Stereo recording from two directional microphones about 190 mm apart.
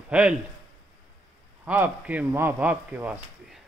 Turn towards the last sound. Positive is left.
turn(degrees=-10)  # may be behind; listen again after turning